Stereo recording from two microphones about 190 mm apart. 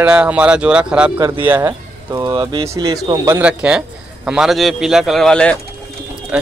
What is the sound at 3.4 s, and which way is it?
Speech, 5° right (ahead or behind).